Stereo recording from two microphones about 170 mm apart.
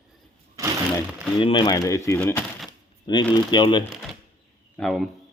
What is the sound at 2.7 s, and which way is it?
Speech, 25° left (ahead or behind).